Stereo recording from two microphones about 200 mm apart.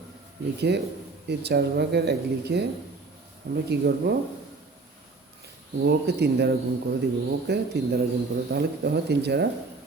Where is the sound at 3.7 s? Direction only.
55° right (ahead or behind).